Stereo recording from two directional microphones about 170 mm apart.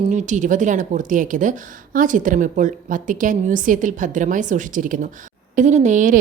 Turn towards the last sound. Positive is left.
turn(degrees=-50)  # may be behind; listen again after turning